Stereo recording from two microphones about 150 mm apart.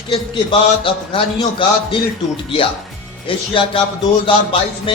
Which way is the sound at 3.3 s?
35° left (ahead or behind).